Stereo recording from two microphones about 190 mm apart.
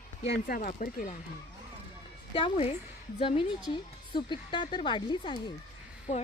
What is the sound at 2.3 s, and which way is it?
A woman's voice, 30° left (ahead or behind).